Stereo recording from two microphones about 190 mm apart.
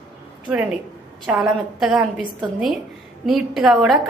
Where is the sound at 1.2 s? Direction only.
5° right (ahead or behind).